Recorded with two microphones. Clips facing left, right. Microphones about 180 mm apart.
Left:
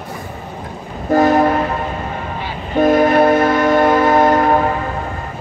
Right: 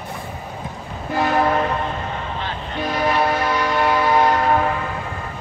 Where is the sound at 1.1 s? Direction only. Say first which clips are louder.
Left 9 dB; 45° left (ahead or behind).